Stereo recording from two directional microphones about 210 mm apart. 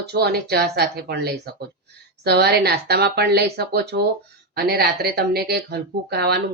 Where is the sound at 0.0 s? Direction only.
50° right (ahead or behind).